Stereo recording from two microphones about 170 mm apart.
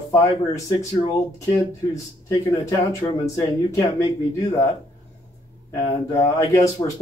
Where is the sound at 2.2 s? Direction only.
20° left (ahead or behind).